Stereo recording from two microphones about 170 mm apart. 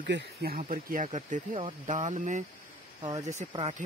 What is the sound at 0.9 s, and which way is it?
Speech, 45° right (ahead or behind).